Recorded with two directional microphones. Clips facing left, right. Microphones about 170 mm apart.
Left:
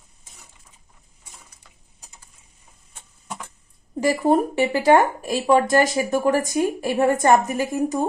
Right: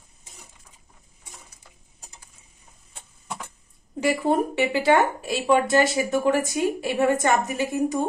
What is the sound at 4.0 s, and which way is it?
Speech, 40° left (ahead or behind).